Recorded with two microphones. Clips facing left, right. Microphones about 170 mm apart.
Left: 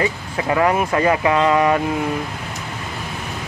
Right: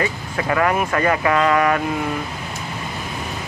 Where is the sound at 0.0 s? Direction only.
20° left (ahead or behind).